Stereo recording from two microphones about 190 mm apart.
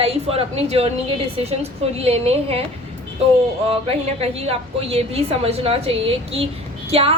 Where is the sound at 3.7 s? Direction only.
30° right (ahead or behind).